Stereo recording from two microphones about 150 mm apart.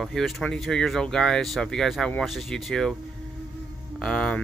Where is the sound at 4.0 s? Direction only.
5° left (ahead or behind).